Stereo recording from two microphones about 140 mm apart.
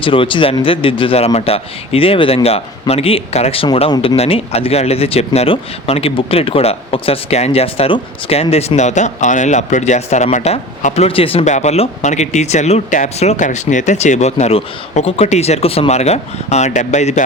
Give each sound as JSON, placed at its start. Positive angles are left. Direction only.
{"t": 0.0, "sound": "a man's voice", "side_deg": 40}
{"t": 11.4, "sound": "a man's voice", "side_deg": 55}